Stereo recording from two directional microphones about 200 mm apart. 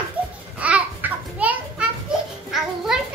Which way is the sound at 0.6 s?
5° right (ahead or behind).